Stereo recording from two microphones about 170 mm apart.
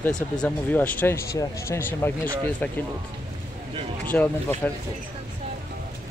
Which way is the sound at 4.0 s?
10° left (ahead or behind).